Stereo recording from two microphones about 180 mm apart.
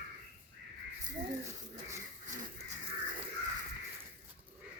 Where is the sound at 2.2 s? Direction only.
45° right (ahead or behind).